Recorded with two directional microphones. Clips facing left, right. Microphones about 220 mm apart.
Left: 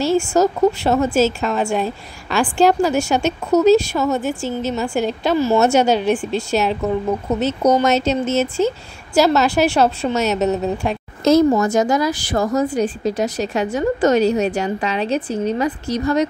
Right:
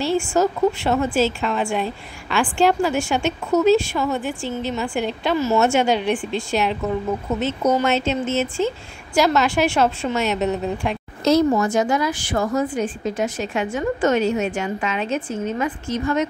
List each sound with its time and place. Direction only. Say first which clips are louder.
0.0 s a woman's voice: left 3 dB; 40° left (ahead or behind)